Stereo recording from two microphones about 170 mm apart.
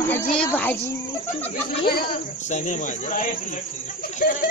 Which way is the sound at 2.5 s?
45° left (ahead or behind).